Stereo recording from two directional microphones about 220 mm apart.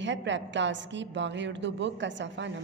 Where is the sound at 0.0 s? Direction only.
55° right (ahead or behind).